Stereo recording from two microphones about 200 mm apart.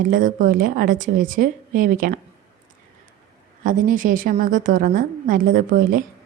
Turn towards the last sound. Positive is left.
turn(degrees=-45)  # may be behind; listen again after turning